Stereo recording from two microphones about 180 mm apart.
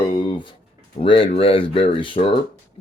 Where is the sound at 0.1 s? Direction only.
25° left (ahead or behind).